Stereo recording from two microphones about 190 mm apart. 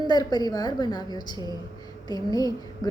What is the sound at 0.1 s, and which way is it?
A woman's voice, 20° left (ahead or behind).